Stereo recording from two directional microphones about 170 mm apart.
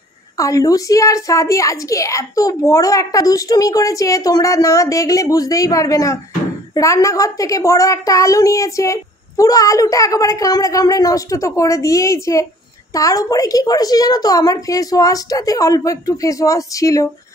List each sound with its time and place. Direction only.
0.4 s a woman's voice: 20° left (ahead or behind)